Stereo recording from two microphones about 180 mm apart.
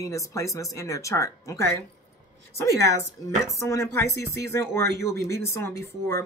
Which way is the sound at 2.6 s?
15° left (ahead or behind).